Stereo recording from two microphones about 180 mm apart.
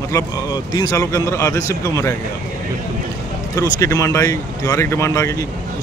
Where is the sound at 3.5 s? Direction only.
15° left (ahead or behind).